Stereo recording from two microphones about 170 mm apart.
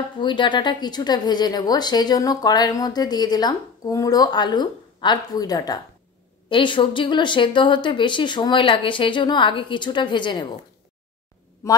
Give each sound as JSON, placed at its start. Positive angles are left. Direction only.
{"t": 0.2, "sound": "speech", "side_deg": 30}